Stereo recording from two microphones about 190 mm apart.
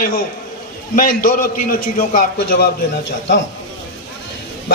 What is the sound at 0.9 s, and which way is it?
A man's voice, 45° left (ahead or behind).